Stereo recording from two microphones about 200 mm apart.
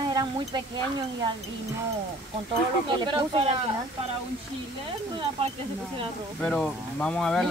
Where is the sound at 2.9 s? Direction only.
20° right (ahead or behind).